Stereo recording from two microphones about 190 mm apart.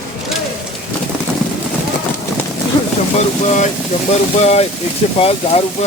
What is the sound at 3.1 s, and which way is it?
Speech, 35° left (ahead or behind).